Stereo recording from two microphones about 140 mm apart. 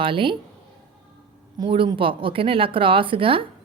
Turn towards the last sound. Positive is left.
turn(degrees=-40)  # may be behind; listen again after turning